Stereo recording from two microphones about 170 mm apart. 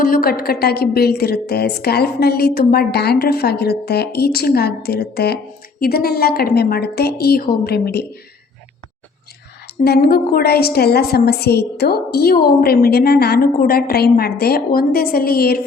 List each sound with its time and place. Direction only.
0.0 s a woman's voice: 60° left (ahead or behind)
9.6 s a woman's voice: 70° left (ahead or behind)